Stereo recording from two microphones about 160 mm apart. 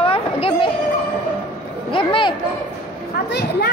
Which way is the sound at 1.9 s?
30° left (ahead or behind).